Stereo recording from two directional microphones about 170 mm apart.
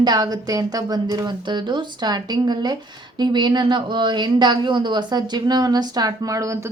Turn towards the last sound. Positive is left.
turn(degrees=-20)  # may be behind; listen again after turning